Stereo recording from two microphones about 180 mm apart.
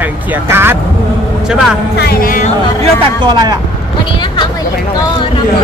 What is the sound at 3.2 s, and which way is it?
Speech, 25° right (ahead or behind).